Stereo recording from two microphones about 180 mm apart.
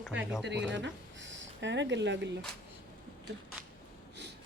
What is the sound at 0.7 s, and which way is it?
Speech, 90° right.